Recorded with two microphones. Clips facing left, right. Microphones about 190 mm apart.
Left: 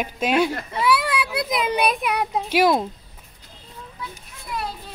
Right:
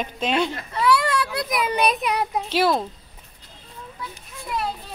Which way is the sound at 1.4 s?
20° left (ahead or behind).